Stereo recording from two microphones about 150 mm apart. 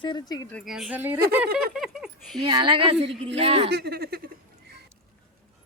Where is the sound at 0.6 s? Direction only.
Centre (ahead or behind).